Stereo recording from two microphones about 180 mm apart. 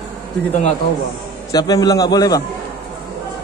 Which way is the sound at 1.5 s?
20° left (ahead or behind).